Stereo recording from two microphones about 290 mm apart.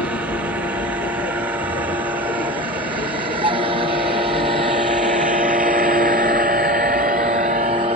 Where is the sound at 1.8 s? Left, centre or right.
Centre.